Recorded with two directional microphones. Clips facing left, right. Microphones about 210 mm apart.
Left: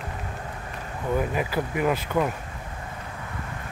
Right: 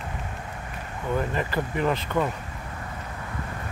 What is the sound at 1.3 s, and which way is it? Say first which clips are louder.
Speech: left 1 dB; 10° left (ahead or behind).